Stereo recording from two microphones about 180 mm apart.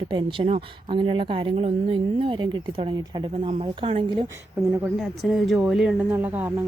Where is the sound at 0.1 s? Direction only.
25° right (ahead or behind).